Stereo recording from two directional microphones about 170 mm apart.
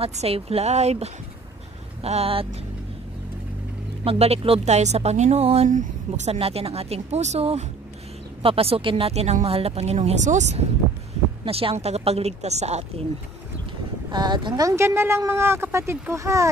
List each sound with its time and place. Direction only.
0.0 s speech: 35° right (ahead or behind)
4.0 s speech: 35° right (ahead or behind)
11.4 s speech: 35° right (ahead or behind)
14.1 s speech: 25° right (ahead or behind)